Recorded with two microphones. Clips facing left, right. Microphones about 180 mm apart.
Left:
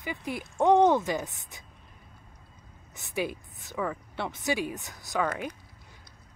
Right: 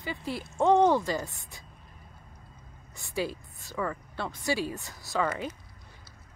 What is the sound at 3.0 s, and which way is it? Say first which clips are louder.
Speech: even; 20° left (ahead or behind).